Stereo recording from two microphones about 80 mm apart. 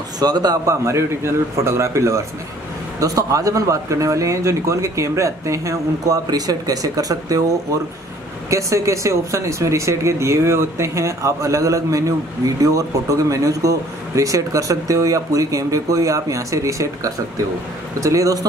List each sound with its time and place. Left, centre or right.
0.2 s a man's voice: right
0.8 s speech: right
6.3 s speech: right